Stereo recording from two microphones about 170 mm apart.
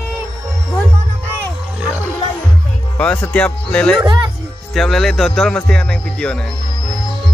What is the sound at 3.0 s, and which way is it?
Speech, 10° left (ahead or behind).